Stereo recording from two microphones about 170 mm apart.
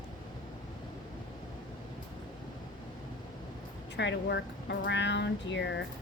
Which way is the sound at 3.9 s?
90° left.